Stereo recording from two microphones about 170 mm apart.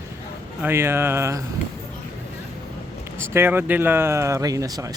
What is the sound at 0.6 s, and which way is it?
Speech, 15° right (ahead or behind).